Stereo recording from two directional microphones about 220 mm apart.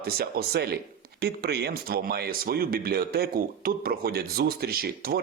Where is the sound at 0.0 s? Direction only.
45° right (ahead or behind).